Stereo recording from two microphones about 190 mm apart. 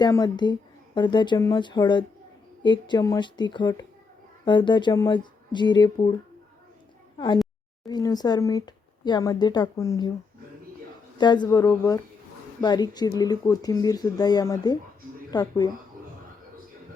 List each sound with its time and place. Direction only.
0.0 s speech: 20° left (ahead or behind)
7.9 s speech: 20° left (ahead or behind)
11.2 s speech: 25° left (ahead or behind)